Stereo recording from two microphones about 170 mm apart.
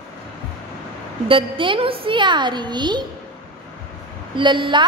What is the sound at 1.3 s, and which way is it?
A woman's voice, 30° right (ahead or behind).